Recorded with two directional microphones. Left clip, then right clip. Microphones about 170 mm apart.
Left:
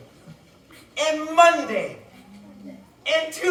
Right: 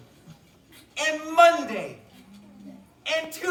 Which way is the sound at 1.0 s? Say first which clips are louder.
Left 2 dB; 10° left (ahead or behind).